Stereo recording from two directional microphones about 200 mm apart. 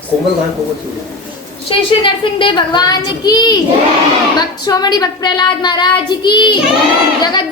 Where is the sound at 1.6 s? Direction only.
25° left (ahead or behind).